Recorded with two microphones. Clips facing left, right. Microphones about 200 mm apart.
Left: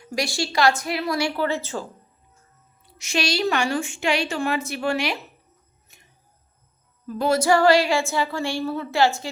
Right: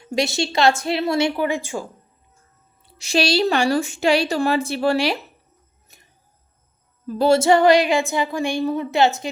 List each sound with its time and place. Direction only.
0.0 s a woman's voice: 25° right (ahead or behind)
1.4 s a woman's voice: 15° right (ahead or behind)
2.8 s a woman's voice: 35° right (ahead or behind)
5.9 s a sound: 40° right (ahead or behind)
7.1 s a woman's voice: 30° right (ahead or behind)